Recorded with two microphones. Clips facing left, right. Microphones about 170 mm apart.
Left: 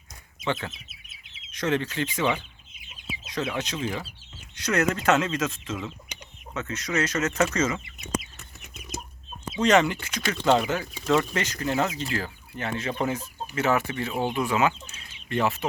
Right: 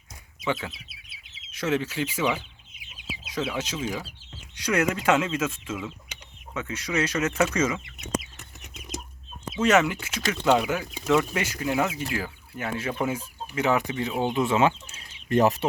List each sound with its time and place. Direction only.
0.4 s speech: 10° right (ahead or behind)
9.6 s speech: 5° right (ahead or behind); by 15.0 s 30° right (ahead or behind)
15.3 s speech: 40° right (ahead or behind)